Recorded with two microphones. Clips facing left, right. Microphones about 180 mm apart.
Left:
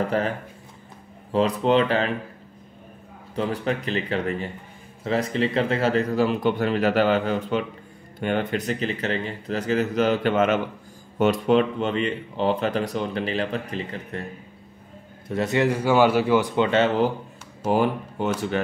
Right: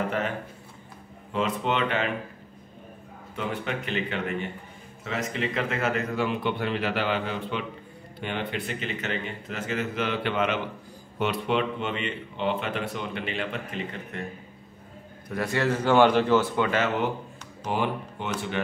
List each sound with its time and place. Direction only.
1.3 s a man's voice: 35° left (ahead or behind)
3.3 s a man's voice: 35° left (ahead or behind)
15.2 s speech: 25° left (ahead or behind)
16.6 s speech: 30° left (ahead or behind)
17.6 s a man's voice: 40° left (ahead or behind)